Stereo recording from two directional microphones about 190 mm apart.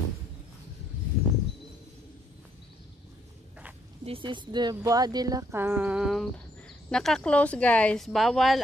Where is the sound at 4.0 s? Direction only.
30° right (ahead or behind).